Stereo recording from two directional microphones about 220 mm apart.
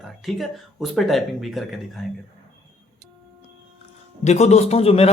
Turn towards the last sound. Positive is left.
turn(degrees=25)  # may be behind; listen again after turning